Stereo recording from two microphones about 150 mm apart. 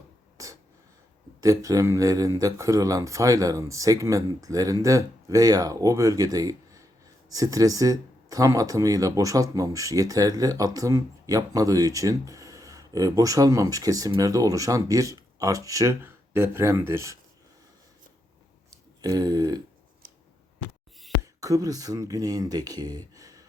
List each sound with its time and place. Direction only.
1.4 s speech: 20° right (ahead or behind)
19.0 s speech: 25° right (ahead or behind)
20.0 s scissors: 70° right (ahead or behind)
21.2 s speech: 25° right (ahead or behind)